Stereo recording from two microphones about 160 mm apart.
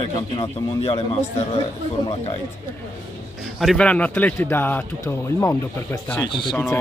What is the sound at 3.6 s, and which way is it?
Speech, 5° left (ahead or behind).